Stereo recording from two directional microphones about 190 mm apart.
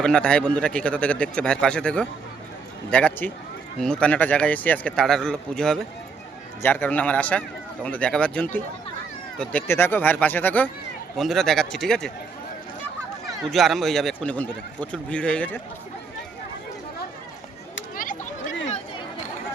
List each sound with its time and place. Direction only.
0.0 s a man's voice: 5° left (ahead or behind)
13.5 s a man's voice: centre (ahead or behind)
17.9 s a sound: 45° left (ahead or behind)